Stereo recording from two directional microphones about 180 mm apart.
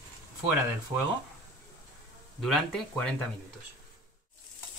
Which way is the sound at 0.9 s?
10° right (ahead or behind).